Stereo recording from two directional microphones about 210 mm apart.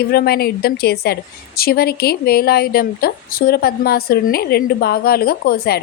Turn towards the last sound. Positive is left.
turn(degrees=50)  # may be behind; listen again after turning